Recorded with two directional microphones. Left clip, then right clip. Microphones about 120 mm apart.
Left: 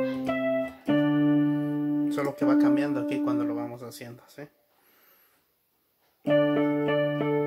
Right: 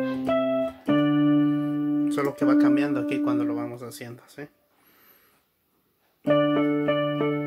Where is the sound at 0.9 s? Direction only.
25° left (ahead or behind).